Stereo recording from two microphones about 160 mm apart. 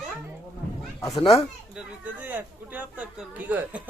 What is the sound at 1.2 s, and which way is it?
Speech, 35° left (ahead or behind).